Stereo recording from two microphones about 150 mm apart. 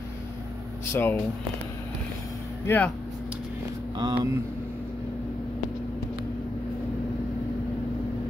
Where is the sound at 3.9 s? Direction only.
30° right (ahead or behind).